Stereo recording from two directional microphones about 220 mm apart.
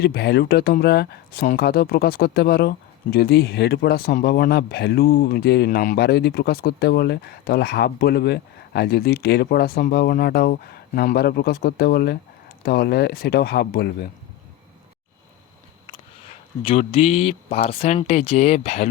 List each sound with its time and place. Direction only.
0.0 s speech: 45° left (ahead or behind)
16.6 s speech: 25° left (ahead or behind)